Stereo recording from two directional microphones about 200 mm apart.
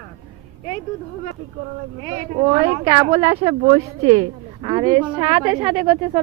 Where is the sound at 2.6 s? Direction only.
30° right (ahead or behind).